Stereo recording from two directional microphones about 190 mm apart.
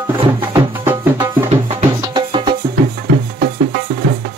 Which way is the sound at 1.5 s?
35° right (ahead or behind).